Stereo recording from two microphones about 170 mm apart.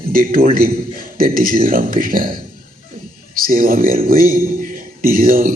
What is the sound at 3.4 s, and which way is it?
Speech, 55° right (ahead or behind).